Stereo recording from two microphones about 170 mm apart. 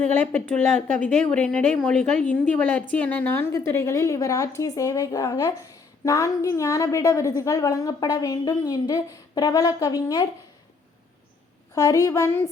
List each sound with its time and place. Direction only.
0.0 s a woman's voice: 10° left (ahead or behind)
11.7 s a woman's voice: 20° left (ahead or behind)